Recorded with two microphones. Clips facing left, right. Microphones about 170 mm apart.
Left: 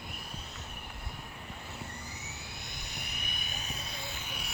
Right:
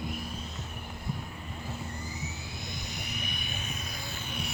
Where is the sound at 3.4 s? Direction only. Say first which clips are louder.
Right 3 dB; 40° left (ahead or behind).